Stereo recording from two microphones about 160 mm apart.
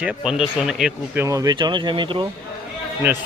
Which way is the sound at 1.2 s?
20° right (ahead or behind).